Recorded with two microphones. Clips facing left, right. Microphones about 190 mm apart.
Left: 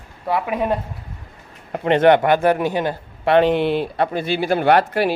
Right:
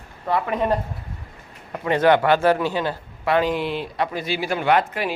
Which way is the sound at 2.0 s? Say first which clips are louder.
Left 2 dB; 20° left (ahead or behind).